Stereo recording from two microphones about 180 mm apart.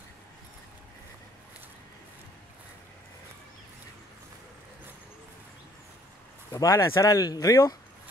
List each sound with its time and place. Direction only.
6.5 s speech: 15° left (ahead or behind)